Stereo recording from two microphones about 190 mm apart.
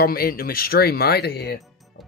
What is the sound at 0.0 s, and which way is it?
Speech, 50° left (ahead or behind).